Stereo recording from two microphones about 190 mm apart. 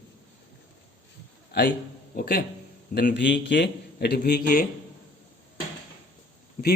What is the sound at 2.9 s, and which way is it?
A man's voice, 60° left (ahead or behind).